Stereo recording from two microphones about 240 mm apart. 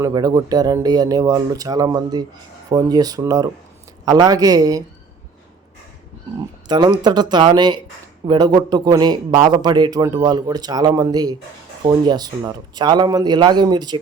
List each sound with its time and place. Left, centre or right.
0.0 s speech: centre
6.7 s speech: centre